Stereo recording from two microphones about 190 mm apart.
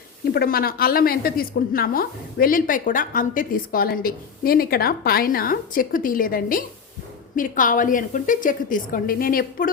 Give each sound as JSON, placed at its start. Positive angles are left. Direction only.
{"t": 0.3, "sound": "a woman's voice", "side_deg": 55}